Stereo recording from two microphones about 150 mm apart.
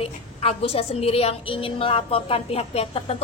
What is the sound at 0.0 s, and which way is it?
A woman's voice, 40° left (ahead or behind).